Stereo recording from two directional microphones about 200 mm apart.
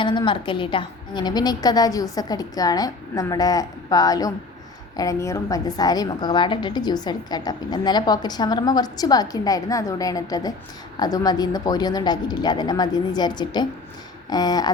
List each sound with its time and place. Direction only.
0.0 s a woman's voice: 25° left (ahead or behind)